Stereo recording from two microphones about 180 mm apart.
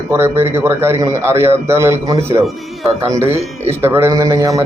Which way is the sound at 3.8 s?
15° right (ahead or behind).